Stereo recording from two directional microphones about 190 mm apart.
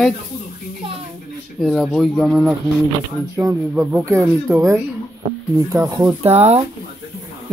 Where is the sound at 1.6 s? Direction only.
Centre (ahead or behind).